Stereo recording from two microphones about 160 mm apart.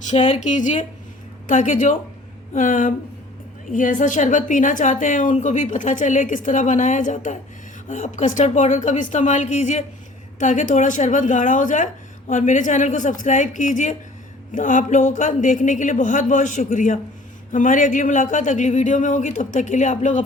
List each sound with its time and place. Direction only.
0.1 s a woman's voice: 50° left (ahead or behind)